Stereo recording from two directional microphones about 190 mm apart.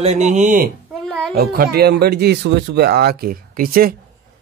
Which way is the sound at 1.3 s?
55° right (ahead or behind).